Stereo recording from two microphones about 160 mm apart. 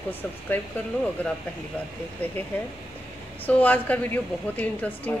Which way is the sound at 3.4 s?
10° left (ahead or behind).